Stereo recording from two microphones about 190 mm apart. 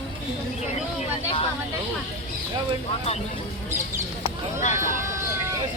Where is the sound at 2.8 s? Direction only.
30° left (ahead or behind).